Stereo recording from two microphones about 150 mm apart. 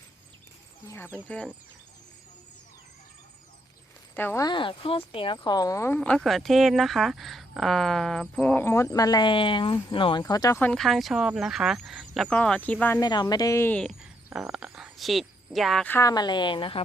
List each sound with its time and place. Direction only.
0.9 s speech: 15° left (ahead or behind)
4.1 s speech: 15° left (ahead or behind)
4.4 s speech: 30° left (ahead or behind)
6.0 s a woman's voice: 5° left (ahead or behind); by 10.6 s 25° left (ahead or behind)
10.6 s a woman's voice: 5° left (ahead or behind)
13.0 s speech: 25° left (ahead or behind); by 13.9 s 10° left (ahead or behind)
14.0 s a sound: 5° right (ahead or behind)
15.9 s speech: 20° left (ahead or behind)